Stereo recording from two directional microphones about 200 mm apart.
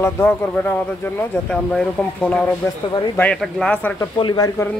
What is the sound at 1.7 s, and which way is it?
A man's voice, 5° left (ahead or behind).